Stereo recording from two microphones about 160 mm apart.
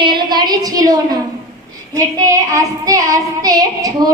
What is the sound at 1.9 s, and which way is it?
Child singing, 20° right (ahead or behind).